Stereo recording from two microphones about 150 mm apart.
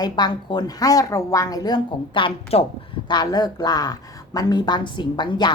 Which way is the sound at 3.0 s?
25° left (ahead or behind).